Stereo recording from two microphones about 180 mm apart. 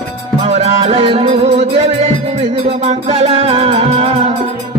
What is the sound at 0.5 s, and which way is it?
Music, 35° right (ahead or behind).